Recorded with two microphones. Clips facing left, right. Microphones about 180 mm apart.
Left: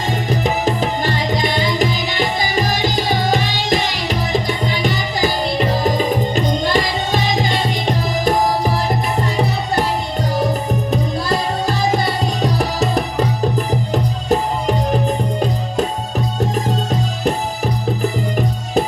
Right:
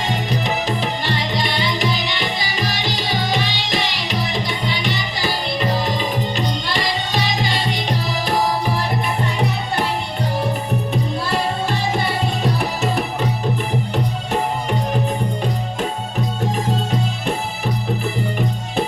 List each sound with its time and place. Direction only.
0.3 s music: 45° left (ahead or behind)
12.5 s music: 40° left (ahead or behind)